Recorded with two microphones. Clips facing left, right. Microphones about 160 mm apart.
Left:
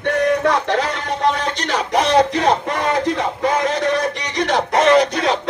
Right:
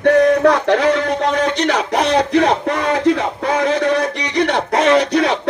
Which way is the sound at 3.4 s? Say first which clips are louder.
Right 2 dB; 60° right (ahead or behind).